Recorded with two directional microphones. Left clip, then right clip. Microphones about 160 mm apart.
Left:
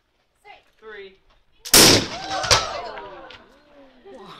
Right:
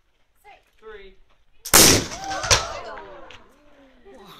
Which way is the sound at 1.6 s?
Centre (ahead or behind).